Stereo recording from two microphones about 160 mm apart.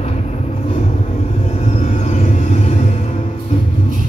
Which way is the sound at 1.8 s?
45° left (ahead or behind).